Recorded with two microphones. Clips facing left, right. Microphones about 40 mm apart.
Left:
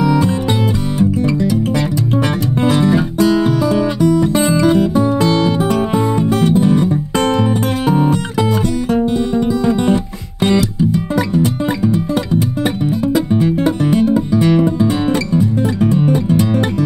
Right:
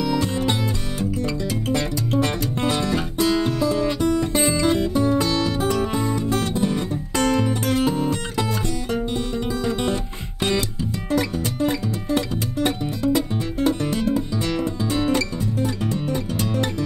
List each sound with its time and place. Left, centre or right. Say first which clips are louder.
0.0 s music: left 7 dB; centre
4.9 s music: left 6 dB; left
9.3 s music: left 9 dB; left